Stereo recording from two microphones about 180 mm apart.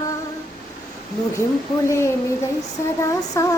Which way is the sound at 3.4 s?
15° left (ahead or behind).